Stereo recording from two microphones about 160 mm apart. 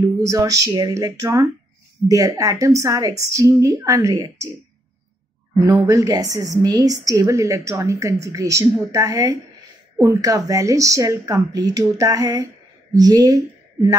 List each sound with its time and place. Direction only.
0.2 s a woman's voice: 20° right (ahead or behind)
5.7 s a woman's voice: 20° right (ahead or behind)